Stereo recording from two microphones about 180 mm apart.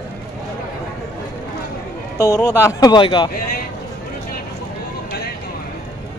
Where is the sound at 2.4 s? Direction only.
15° left (ahead or behind).